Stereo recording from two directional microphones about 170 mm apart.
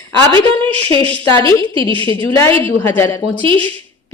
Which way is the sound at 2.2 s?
15° left (ahead or behind).